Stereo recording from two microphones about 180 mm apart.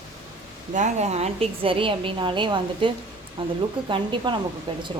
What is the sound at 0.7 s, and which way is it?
A woman's voice, 40° right (ahead or behind).